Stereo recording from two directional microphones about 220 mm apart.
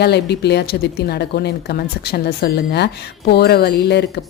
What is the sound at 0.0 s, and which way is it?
Speech, 50° left (ahead or behind).